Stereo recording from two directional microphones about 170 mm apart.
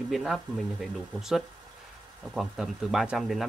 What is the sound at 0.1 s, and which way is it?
Speech, centre (ahead or behind).